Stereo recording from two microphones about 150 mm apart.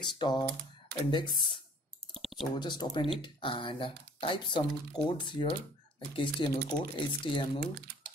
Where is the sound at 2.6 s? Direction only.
30° left (ahead or behind).